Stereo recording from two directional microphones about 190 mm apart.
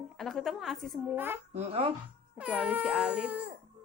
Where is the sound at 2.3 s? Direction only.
5° right (ahead or behind).